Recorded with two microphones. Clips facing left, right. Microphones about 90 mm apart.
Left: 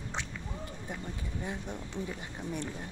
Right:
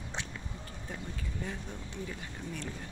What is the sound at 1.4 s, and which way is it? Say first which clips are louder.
Speech: left 3 dB; 15° left (ahead or behind).